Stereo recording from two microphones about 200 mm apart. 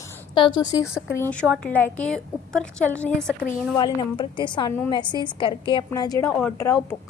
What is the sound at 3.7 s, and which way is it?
A woman's voice, 20° left (ahead or behind).